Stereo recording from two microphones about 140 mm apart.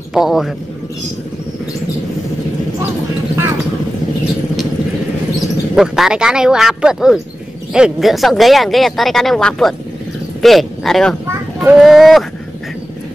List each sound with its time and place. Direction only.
0.1 s a man's voice: centre (ahead or behind)
5.8 s speech: 5° right (ahead or behind)
11.2 s a sound: 15° right (ahead or behind)
11.7 s speech: centre (ahead or behind)